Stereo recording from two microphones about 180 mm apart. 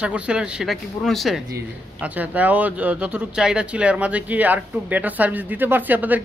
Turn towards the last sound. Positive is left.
turn(degrees=-10)  # may be behind; listen again after turning